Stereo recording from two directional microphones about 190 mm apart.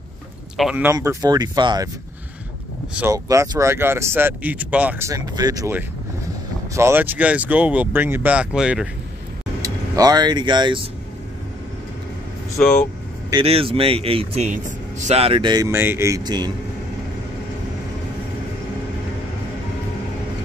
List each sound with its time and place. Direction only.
0.6 s speech: 5° right (ahead or behind)
0.9 s speech: 20° right (ahead or behind)
3.0 s speech: 15° right (ahead or behind)
9.6 s speech: 20° right (ahead or behind)
12.6 s speech: 5° left (ahead or behind)
13.3 s speech: 30° right (ahead or behind)